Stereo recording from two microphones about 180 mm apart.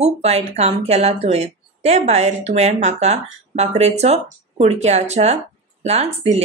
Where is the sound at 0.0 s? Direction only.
35° right (ahead or behind).